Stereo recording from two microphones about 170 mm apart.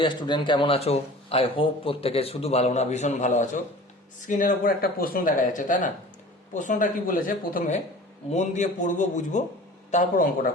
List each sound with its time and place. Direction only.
0.0 s a man's voice: 25° left (ahead or behind); by 10.5 s 50° left (ahead or behind)